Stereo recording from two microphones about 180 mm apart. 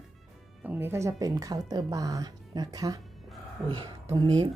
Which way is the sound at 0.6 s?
10° right (ahead or behind).